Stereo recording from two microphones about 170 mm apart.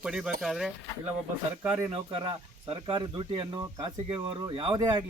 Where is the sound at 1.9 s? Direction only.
30° right (ahead or behind).